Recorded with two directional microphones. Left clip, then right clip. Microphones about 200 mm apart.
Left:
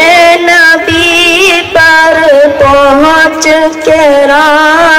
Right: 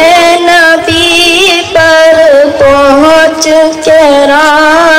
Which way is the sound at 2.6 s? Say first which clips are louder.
Even; 30° right (ahead or behind).